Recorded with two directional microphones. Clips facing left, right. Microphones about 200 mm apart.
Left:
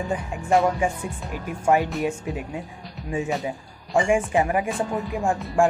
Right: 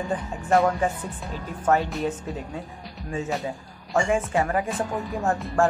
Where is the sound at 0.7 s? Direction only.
10° left (ahead or behind).